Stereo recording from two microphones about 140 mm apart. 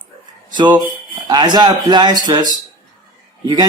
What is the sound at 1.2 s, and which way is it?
Speech, 30° right (ahead or behind).